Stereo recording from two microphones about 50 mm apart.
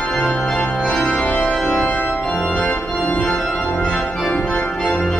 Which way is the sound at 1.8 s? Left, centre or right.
Left.